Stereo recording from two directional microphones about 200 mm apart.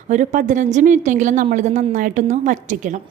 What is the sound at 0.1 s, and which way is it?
A woman's voice, 40° right (ahead or behind).